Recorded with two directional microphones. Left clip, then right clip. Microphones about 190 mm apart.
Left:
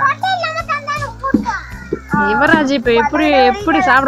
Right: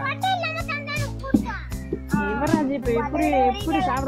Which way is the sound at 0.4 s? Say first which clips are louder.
Left 9 dB; 5° left (ahead or behind).